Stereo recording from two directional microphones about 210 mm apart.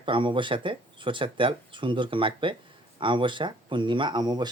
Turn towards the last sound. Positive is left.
turn(degrees=-20)  # may be behind; listen again after turning